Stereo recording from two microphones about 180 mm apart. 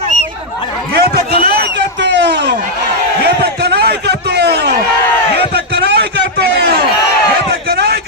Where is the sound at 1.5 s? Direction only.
70° right (ahead or behind).